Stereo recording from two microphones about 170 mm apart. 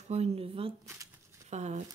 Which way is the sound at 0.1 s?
35° right (ahead or behind).